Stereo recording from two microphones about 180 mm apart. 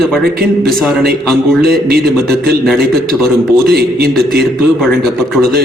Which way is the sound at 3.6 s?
60° right (ahead or behind).